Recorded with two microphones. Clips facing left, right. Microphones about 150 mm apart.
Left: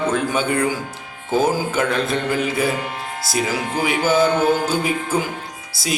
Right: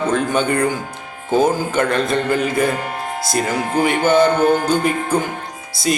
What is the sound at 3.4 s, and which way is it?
Speech, 50° right (ahead or behind).